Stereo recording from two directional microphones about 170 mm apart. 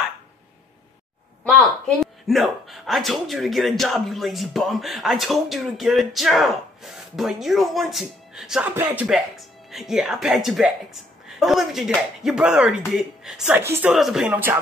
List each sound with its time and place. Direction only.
2.0 s speech: centre (ahead or behind)